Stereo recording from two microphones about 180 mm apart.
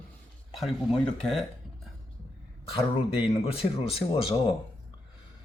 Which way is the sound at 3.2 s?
35° left (ahead or behind).